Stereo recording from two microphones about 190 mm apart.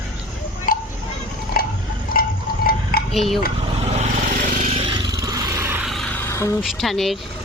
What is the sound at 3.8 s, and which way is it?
Vehicle, 35° right (ahead or behind).